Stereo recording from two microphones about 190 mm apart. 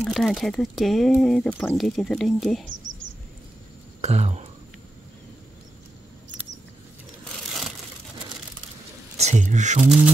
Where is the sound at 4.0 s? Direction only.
35° right (ahead or behind).